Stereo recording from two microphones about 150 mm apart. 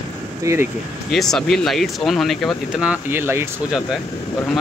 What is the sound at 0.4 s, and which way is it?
Speech, 20° right (ahead or behind).